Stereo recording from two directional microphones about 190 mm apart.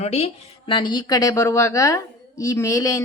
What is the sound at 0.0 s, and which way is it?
Speech, 35° left (ahead or behind).